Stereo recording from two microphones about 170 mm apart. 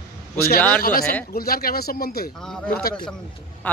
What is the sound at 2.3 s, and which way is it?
A man's voice, 5° left (ahead or behind).